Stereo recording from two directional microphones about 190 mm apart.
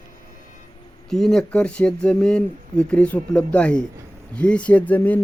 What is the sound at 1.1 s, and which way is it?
Speech, centre (ahead or behind).